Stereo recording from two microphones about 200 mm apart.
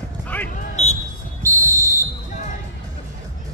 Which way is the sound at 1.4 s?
15° right (ahead or behind).